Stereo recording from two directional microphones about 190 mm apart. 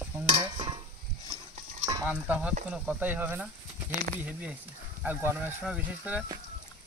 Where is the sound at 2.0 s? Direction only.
10° right (ahead or behind).